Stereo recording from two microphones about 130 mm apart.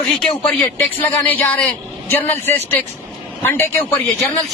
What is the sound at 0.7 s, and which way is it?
A woman's voice, 15° left (ahead or behind).